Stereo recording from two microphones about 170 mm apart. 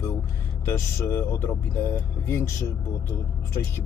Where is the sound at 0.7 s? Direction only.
15° left (ahead or behind).